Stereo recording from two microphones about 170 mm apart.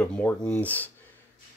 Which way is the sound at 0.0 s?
10° left (ahead or behind).